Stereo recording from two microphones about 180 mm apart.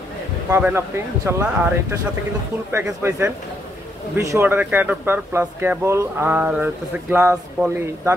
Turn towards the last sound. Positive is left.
turn(degrees=-15)  # may be behind; listen again after turning